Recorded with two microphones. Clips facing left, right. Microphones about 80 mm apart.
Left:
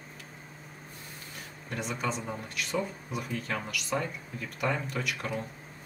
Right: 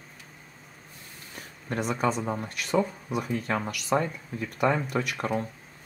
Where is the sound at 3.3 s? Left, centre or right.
Right.